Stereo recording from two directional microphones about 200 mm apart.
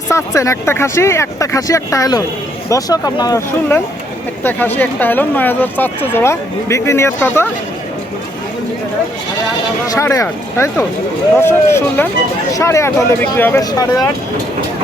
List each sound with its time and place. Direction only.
0.1 s speech: 15° left (ahead or behind)
4.8 s speech: 10° left (ahead or behind)
9.8 s speech: 15° left (ahead or behind)